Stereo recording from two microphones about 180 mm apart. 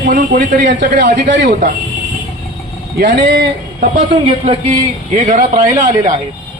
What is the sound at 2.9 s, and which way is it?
Speech, 50° right (ahead or behind).